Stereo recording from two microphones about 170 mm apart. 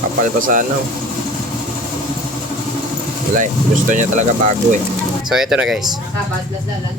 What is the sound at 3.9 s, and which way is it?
Speech, 50° right (ahead or behind).